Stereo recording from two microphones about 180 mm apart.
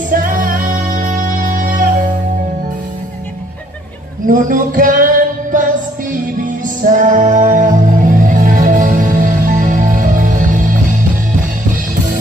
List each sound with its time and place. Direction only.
0.1 s music: 50° right (ahead or behind)
4.3 s music: 50° right (ahead or behind)
6.8 s music: 45° right (ahead or behind)